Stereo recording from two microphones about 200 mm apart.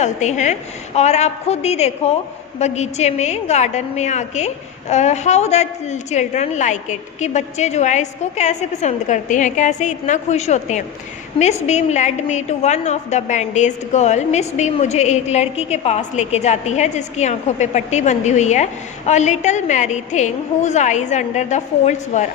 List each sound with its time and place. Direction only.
0.0 s a woman's voice: 35° left (ahead or behind)